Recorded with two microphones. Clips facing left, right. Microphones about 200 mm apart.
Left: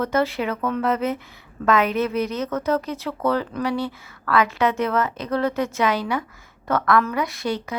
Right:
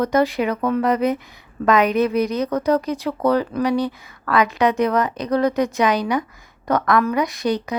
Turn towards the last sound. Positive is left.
turn(degrees=-15)  # may be behind; listen again after turning